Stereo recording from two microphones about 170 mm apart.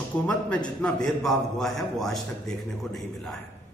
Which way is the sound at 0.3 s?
5° left (ahead or behind).